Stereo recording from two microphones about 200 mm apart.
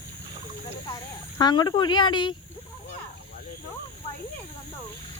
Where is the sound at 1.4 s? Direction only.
20° left (ahead or behind).